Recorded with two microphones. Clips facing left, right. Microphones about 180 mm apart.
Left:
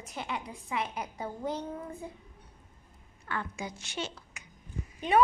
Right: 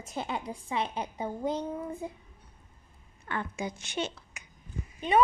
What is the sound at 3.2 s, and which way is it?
Speech, 20° right (ahead or behind).